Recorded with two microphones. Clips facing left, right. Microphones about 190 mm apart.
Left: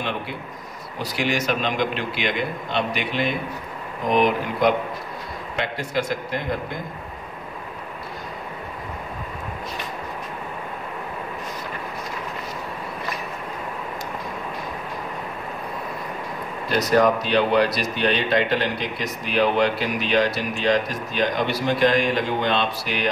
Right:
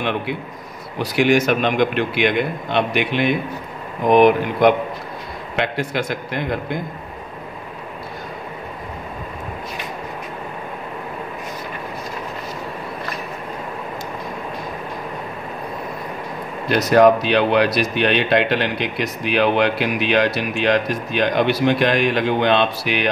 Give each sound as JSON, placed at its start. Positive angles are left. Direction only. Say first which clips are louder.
{"t": 0.9, "sound": "a man's voice", "louder": "right 8 dB", "side_deg": -60}
{"t": 5.8, "sound": "a man's voice", "louder": "right 2 dB", "side_deg": -65}
{"t": 16.6, "sound": "a man's voice", "louder": "right 5 dB", "side_deg": -70}